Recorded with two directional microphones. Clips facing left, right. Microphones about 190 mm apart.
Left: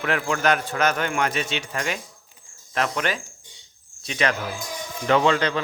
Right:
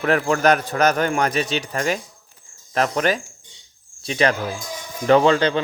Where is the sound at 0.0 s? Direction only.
40° right (ahead or behind).